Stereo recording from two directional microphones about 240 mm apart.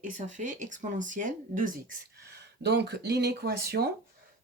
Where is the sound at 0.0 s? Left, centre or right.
Right.